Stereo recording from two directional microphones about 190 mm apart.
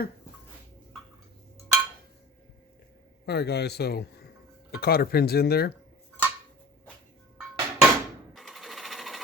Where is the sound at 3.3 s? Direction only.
60° left (ahead or behind).